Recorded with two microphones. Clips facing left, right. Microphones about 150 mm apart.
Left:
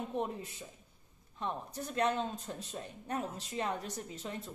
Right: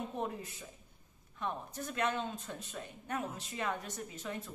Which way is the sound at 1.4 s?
35° left (ahead or behind).